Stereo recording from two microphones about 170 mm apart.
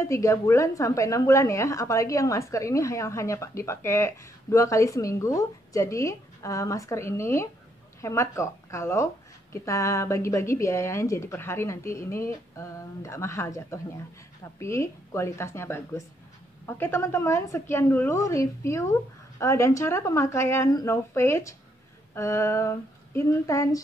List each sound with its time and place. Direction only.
0.0 s a woman's voice: 15° left (ahead or behind)